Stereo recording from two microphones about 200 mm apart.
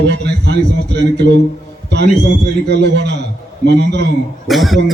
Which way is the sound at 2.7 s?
60° right (ahead or behind).